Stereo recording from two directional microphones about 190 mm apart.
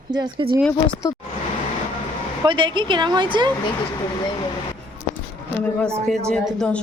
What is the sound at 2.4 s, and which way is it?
Speech, 25° right (ahead or behind).